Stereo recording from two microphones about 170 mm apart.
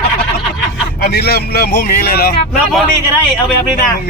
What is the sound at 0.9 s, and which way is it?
A man's voice, 70° left (ahead or behind).